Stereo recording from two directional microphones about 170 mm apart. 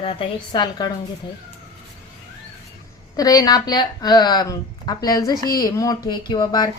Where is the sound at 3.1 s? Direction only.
20° left (ahead or behind).